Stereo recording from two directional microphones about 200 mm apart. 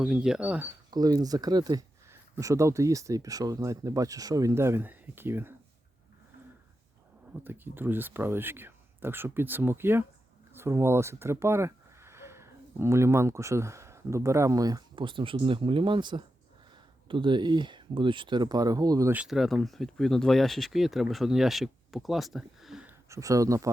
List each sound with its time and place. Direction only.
0.0 s speech: 5° right (ahead or behind)
0.9 s speech: 20° right (ahead or behind)
7.4 s speech: 10° right (ahead or behind)